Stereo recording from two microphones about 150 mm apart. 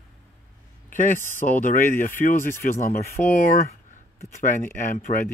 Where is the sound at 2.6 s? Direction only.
20° left (ahead or behind).